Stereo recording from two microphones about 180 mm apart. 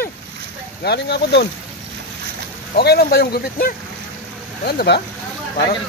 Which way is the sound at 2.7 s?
65° left (ahead or behind).